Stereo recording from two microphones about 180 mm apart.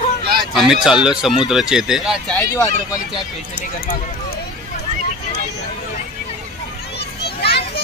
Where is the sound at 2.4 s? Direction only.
20° left (ahead or behind).